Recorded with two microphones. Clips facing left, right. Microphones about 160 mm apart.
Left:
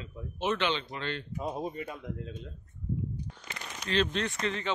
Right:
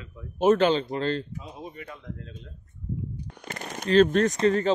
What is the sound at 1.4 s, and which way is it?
Speech, 45° left (ahead or behind).